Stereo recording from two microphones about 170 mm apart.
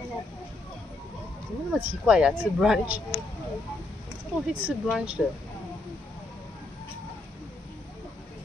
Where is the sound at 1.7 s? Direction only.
5° right (ahead or behind).